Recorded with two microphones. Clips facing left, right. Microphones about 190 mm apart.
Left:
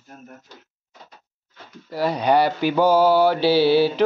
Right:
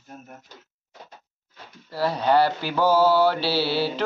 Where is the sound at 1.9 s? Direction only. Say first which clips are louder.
Left 2 dB; 15° left (ahead or behind).